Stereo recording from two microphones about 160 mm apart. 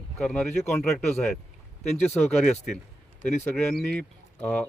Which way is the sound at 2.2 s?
45° left (ahead or behind).